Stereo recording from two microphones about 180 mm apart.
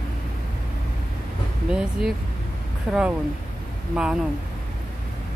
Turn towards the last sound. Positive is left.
turn(degrees=-5)  # may be behind; listen again after turning